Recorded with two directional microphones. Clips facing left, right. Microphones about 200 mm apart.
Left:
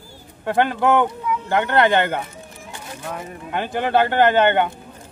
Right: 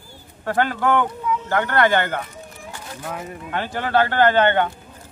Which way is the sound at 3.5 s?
15° left (ahead or behind).